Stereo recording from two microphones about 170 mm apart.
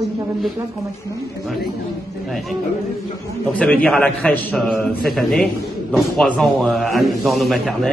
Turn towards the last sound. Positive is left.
turn(degrees=0)  # may be behind; listen again after turning